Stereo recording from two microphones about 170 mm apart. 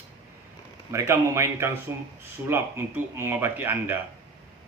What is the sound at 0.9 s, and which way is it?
A man's voice, 15° right (ahead or behind).